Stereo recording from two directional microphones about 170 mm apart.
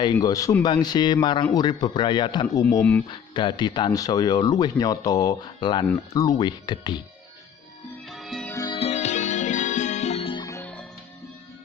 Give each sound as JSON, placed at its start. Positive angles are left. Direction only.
{"t": 0.0, "sound": "speech", "side_deg": 20}
{"t": 5.9, "sound": "speech", "side_deg": 10}
{"t": 6.2, "sound": "speech", "side_deg": 25}
{"t": 8.1, "sound": "music", "side_deg": 0}
{"t": 8.5, "sound": "music", "side_deg": 20}
{"t": 8.7, "sound": "music", "side_deg": 40}
{"t": 10.4, "sound": "music", "side_deg": 15}